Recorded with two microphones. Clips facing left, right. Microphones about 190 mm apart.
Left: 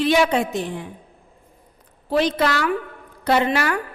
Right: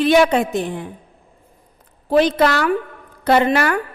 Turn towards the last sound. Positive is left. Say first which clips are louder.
# right 4 dB
turn(degrees=-50)  # may be behind; listen again after turning